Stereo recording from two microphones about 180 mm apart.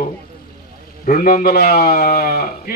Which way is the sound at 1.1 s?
55° left (ahead or behind).